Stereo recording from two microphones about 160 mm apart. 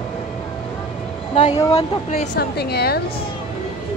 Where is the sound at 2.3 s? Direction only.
90° left.